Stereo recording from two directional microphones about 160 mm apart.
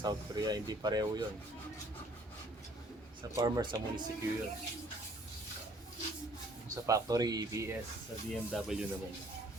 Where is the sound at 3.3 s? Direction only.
20° right (ahead or behind).